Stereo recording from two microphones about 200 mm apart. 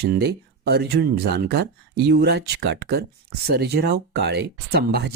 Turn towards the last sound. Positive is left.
turn(degrees=-55)  # may be behind; listen again after turning